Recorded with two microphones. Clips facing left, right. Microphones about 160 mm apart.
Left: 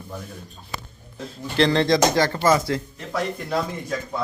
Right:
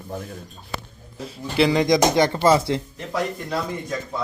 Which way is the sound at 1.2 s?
10° right (ahead or behind).